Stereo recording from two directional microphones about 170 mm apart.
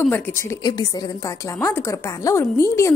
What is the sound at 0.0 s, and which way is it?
A woman's voice, 10° left (ahead or behind).